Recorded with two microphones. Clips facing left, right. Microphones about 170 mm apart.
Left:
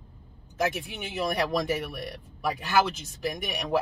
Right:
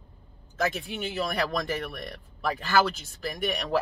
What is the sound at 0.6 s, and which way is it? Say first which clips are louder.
Speech: even; 15° left (ahead or behind).